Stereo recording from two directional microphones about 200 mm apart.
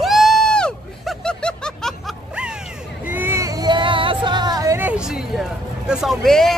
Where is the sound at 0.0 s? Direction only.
Centre (ahead or behind).